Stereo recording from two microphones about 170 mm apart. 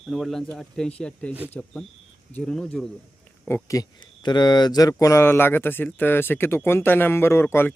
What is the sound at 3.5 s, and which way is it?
Speech, 20° left (ahead or behind).